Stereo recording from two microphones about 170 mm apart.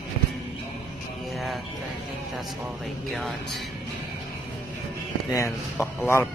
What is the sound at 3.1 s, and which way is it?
Speech, centre (ahead or behind).